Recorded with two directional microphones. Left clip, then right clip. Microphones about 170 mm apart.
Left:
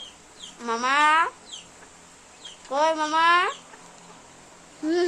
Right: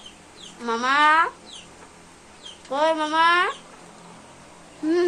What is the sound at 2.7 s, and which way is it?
Speech, 20° left (ahead or behind).